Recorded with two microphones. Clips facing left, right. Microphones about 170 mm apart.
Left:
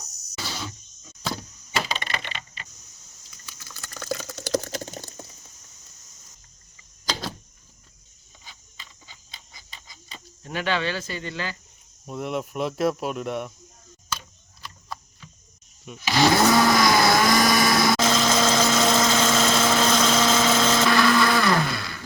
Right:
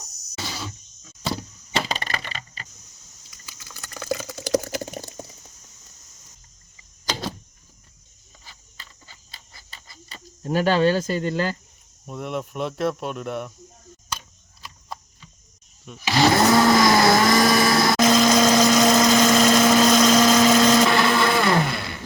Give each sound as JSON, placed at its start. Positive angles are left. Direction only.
{"t": 1.9, "sound": "typing", "side_deg": -40}
{"t": 3.2, "sound": "a sound", "side_deg": -5}
{"t": 7.1, "sound": "power windows", "side_deg": 0}
{"t": 8.4, "sound": "a sound", "side_deg": -5}
{"t": 10.2, "sound": "speech", "side_deg": -40}
{"t": 12.0, "sound": "speech", "side_deg": 0}
{"t": 15.9, "sound": "blender", "side_deg": 0}
{"t": 18.0, "sound": "vehicle", "side_deg": -15}
{"t": 20.9, "sound": "blender", "side_deg": -25}